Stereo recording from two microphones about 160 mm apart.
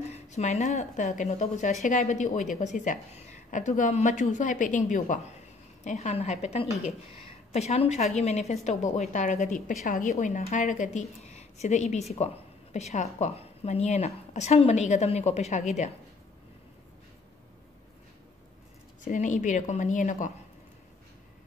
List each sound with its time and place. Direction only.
0.3 s a woman's voice: 45° left (ahead or behind)
19.0 s a woman's voice: 50° left (ahead or behind)